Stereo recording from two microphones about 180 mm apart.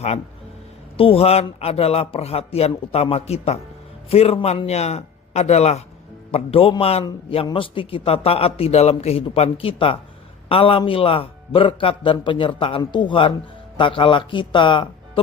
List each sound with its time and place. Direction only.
0.9 s a man's voice: 30° left (ahead or behind)